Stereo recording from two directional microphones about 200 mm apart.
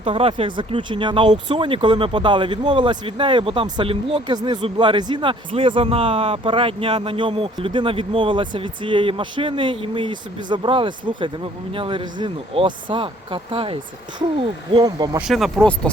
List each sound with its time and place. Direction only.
0.0 s speech: 30° right (ahead or behind)
15.3 s speech: centre (ahead or behind)